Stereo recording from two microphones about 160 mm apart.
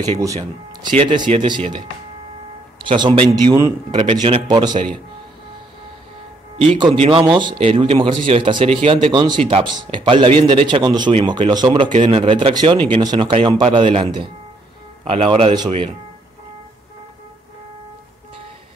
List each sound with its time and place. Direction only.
0.2 s a man's voice: 25° right (ahead or behind)
2.8 s a man's voice: 30° right (ahead or behind)
6.6 s a man's voice: 35° right (ahead or behind)